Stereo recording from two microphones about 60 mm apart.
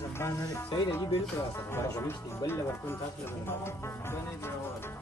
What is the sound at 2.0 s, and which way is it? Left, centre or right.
Music, left.